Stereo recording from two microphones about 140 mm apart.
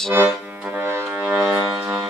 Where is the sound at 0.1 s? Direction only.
15° right (ahead or behind).